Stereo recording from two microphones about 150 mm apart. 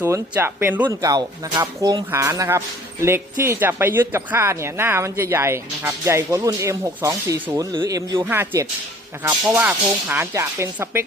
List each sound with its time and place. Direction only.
0.0 s speech: 15° right (ahead or behind)
1.0 s speech: 25° right (ahead or behind)